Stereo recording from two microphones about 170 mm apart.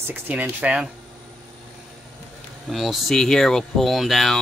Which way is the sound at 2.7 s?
Centre (ahead or behind).